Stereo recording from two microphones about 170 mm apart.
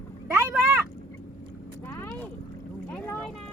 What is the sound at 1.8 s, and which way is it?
Boat, 15° left (ahead or behind).